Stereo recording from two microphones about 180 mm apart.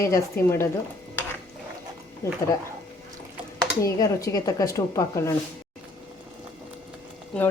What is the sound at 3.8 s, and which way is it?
Speech, 20° left (ahead or behind).